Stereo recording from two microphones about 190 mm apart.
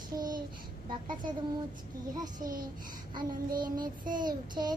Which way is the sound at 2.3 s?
45° right (ahead or behind).